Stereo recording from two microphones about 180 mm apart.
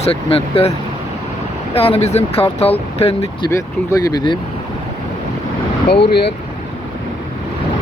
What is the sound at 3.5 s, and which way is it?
Speech, 15° left (ahead or behind).